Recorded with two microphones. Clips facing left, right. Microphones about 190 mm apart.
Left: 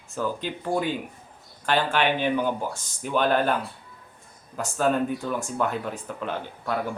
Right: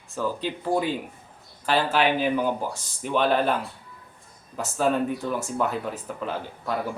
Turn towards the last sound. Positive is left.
turn(degrees=0)  # may be behind; listen again after turning